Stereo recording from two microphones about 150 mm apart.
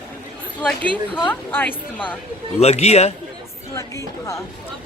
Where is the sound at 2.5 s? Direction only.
45° left (ahead or behind).